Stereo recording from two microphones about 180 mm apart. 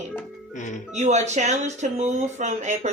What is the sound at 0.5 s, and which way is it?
Speech, 45° left (ahead or behind).